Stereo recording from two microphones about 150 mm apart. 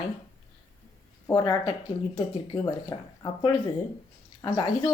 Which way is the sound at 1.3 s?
30° left (ahead or behind).